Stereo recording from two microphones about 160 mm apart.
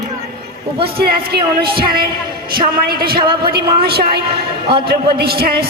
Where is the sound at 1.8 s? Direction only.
70° right (ahead or behind).